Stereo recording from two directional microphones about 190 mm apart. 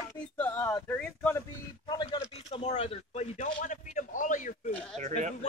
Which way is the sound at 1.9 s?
25° left (ahead or behind).